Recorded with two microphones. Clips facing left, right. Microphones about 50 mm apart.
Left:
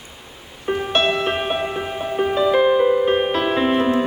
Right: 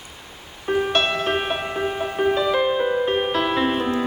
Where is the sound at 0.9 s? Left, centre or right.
Left.